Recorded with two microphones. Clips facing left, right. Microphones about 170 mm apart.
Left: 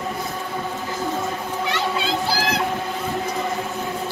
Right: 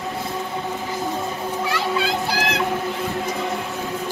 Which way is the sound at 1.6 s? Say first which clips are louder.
Right 1 dB; 25° left (ahead or behind).